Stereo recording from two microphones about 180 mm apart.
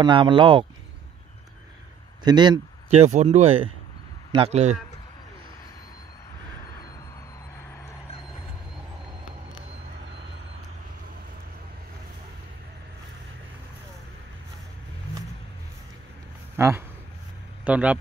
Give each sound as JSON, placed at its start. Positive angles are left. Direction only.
{"t": 0.0, "sound": "speech", "side_deg": -25}
{"t": 2.2, "sound": "speech", "side_deg": -25}
{"t": 16.5, "sound": "speech", "side_deg": -15}